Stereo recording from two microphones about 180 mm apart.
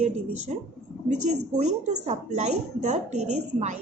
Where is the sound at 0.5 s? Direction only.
40° right (ahead or behind).